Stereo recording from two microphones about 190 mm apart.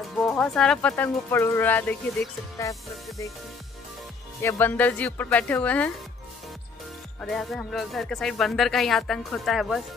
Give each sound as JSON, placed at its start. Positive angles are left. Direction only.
{"t": 0.4, "sound": "speech", "side_deg": 5}
{"t": 4.4, "sound": "speech", "side_deg": 10}
{"t": 7.2, "sound": "speech", "side_deg": 0}